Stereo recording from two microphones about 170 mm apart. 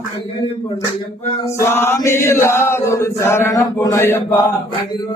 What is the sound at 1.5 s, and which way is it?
Chant, 15° left (ahead or behind).